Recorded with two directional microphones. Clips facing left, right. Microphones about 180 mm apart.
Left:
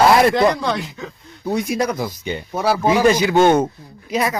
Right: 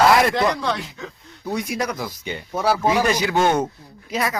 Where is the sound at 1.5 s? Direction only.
25° left (ahead or behind).